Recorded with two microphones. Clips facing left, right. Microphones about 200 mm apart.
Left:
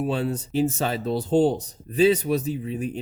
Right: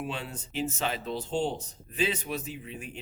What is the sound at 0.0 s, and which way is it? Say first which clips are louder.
Speech: left 11 dB; 40° left (ahead or behind).